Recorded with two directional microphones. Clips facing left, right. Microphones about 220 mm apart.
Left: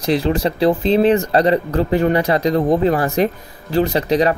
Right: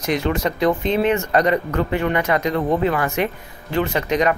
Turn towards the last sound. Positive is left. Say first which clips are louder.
# left 3 dB
turn(degrees=35)  # may be behind; listen again after turning